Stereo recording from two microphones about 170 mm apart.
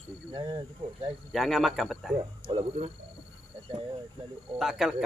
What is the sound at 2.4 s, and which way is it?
Speech, 30° right (ahead or behind).